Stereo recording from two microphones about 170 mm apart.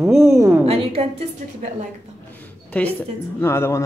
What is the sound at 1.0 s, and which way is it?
Speech, 35° right (ahead or behind).